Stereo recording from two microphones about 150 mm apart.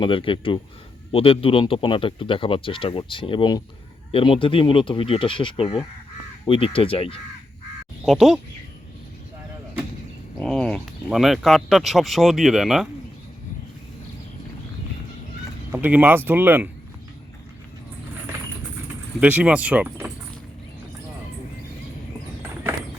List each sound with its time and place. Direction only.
0.0 s speech: 35° left (ahead or behind)
8.0 s speech: centre (ahead or behind)
10.4 s speech: 5° left (ahead or behind)
15.7 s speech: 10° right (ahead or behind)
19.2 s speech: 10° right (ahead or behind)